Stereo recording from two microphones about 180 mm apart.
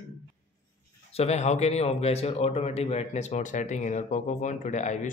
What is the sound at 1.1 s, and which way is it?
Speech, 35° left (ahead or behind).